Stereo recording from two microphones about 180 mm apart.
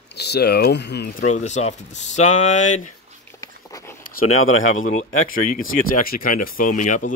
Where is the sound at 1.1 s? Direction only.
40° left (ahead or behind).